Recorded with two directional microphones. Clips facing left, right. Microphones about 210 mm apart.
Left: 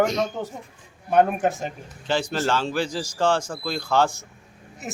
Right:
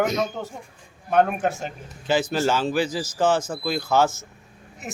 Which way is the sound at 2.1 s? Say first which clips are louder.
Right 2 dB; 5° right (ahead or behind).